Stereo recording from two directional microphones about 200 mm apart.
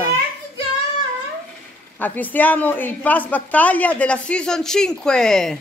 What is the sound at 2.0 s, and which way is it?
A woman's voice, 10° left (ahead or behind).